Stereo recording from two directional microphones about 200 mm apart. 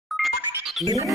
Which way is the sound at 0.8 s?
20° right (ahead or behind).